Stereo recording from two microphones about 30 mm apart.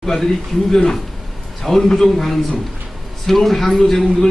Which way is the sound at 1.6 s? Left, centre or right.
Centre.